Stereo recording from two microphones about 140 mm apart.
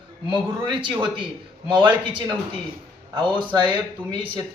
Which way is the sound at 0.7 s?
35° right (ahead or behind).